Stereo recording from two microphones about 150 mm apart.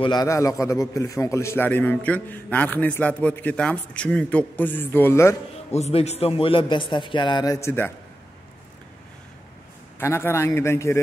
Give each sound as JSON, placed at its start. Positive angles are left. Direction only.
{"t": 0.0, "sound": "a man's voice", "side_deg": 25}
{"t": 5.7, "sound": "a man's voice", "side_deg": 45}
{"t": 9.9, "sound": "a man's voice", "side_deg": 15}